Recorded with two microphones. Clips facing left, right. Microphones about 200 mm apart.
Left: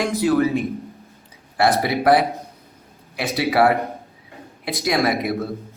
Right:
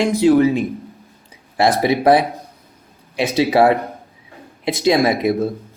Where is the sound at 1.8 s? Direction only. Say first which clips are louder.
Right 5 dB; 20° right (ahead or behind).